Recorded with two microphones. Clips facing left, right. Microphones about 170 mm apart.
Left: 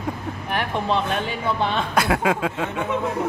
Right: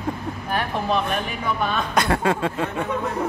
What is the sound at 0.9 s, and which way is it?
Speech, 25° left (ahead or behind).